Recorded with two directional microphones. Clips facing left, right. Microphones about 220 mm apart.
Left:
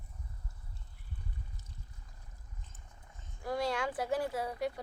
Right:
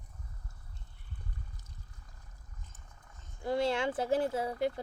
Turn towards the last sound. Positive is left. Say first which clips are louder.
# right 3 dB
turn(degrees=-25)  # may be behind; listen again after turning